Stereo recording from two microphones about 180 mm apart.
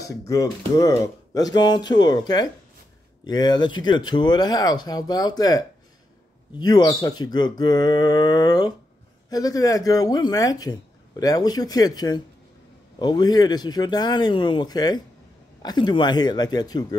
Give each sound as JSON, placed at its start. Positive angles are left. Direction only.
{"t": 0.3, "sound": "speech", "side_deg": 20}
{"t": 6.6, "sound": "speech", "side_deg": 20}